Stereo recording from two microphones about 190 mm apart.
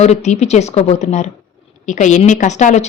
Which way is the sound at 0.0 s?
35° left (ahead or behind).